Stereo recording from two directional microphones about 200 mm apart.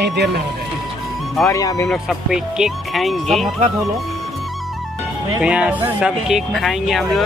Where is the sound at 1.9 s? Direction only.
Centre (ahead or behind).